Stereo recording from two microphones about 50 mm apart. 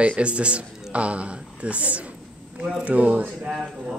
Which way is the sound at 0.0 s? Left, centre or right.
Right.